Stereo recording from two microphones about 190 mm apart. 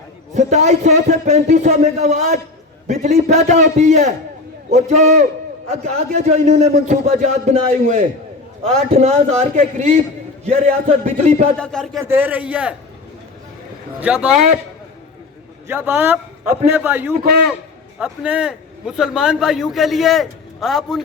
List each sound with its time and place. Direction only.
0.3 s a man's voice: 35° right (ahead or behind)
11.5 s a man's voice: 5° left (ahead or behind)
12.0 s a man's voice: 10° right (ahead or behind)
14.0 s a man's voice: 5° right (ahead or behind)
15.6 s a man's voice: 10° right (ahead or behind)